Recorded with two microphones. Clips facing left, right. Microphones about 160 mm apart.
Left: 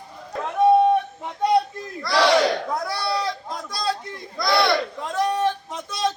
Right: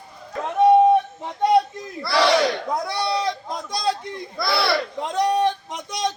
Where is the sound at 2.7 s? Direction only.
20° right (ahead or behind).